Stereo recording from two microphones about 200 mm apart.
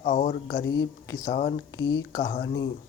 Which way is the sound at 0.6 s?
15° left (ahead or behind).